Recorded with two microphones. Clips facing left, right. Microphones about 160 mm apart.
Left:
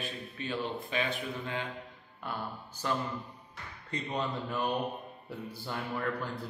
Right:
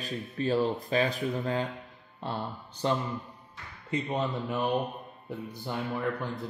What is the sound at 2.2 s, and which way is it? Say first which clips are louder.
Speech: right 4 dB; 25° right (ahead or behind).